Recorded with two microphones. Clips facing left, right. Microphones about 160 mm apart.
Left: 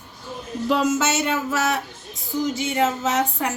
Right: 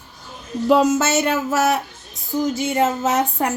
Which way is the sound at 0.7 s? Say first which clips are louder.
Right 5 dB; 50° right (ahead or behind).